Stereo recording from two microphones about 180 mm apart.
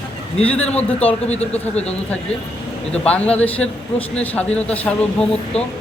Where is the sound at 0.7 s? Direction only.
5° left (ahead or behind).